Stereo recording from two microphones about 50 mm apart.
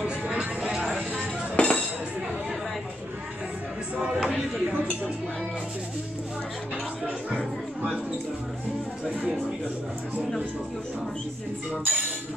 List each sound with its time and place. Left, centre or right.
0.0 s music: centre
1.6 s chink: centre
4.2 s a sound: centre
11.7 s speech: right